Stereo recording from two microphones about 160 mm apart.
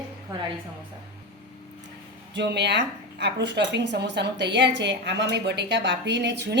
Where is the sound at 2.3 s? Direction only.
90° right.